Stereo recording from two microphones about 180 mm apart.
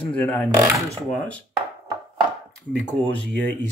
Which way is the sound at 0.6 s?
15° right (ahead or behind).